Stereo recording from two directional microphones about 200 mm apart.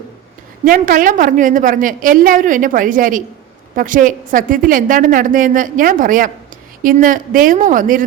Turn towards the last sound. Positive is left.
turn(degrees=-40)  # may be behind; listen again after turning